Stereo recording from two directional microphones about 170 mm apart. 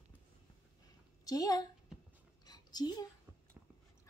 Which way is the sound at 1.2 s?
20° left (ahead or behind).